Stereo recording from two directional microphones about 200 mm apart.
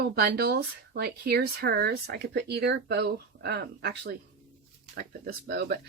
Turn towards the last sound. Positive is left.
turn(degrees=-55)  # may be behind; listen again after turning